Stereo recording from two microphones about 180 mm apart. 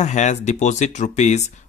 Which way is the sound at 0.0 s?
40° left (ahead or behind).